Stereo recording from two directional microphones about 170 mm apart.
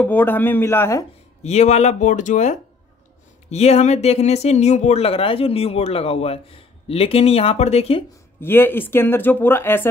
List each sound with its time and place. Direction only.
0.0 s speech: 10° left (ahead or behind)
1.4 s speech: 40° left (ahead or behind)
8.4 s speech: 10° left (ahead or behind)